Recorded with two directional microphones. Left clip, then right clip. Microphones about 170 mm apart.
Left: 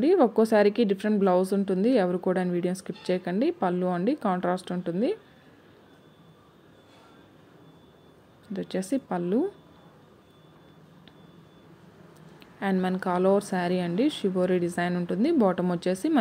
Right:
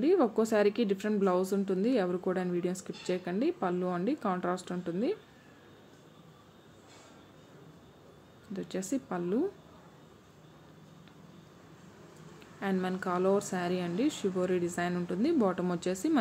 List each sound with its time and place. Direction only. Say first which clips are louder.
0.0 s a woman's voice: left 6 dB; 20° left (ahead or behind)
8.5 s a woman's voice: left 6 dB; 20° left (ahead or behind)
12.4 s a woman's voice: left 5 dB; 20° left (ahead or behind)